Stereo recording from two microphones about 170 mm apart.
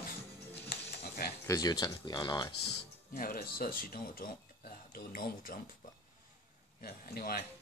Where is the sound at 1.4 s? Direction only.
20° left (ahead or behind).